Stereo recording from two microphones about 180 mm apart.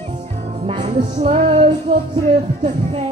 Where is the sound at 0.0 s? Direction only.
35° right (ahead or behind).